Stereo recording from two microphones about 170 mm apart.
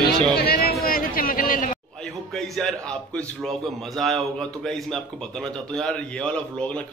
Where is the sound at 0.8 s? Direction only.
55° left (ahead or behind).